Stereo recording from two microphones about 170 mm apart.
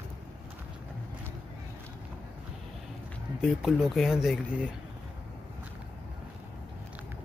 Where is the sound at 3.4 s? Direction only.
5° right (ahead or behind).